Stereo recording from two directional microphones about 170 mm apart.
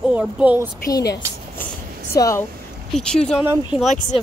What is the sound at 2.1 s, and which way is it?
Speech, 20° left (ahead or behind).